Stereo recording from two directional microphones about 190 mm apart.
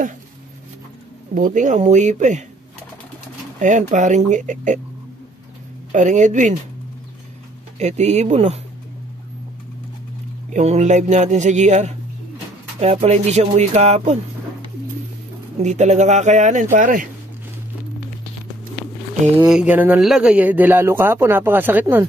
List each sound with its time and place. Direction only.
1.3 s a man's voice: 45° right (ahead or behind)
3.5 s a man's voice: 40° right (ahead or behind)
5.9 s a man's voice: 40° right (ahead or behind)
7.8 s a man's voice: 35° right (ahead or behind)
10.5 s a man's voice: 35° right (ahead or behind)
15.6 s a man's voice: 40° right (ahead or behind)
19.4 s speech: 5° right (ahead or behind)